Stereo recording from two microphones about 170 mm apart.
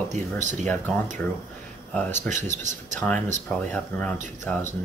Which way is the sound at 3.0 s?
5° left (ahead or behind).